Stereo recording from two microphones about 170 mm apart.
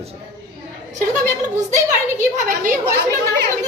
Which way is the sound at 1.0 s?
45° right (ahead or behind).